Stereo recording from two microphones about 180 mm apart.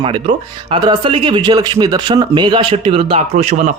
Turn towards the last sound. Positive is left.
turn(degrees=-40)  # may be behind; listen again after turning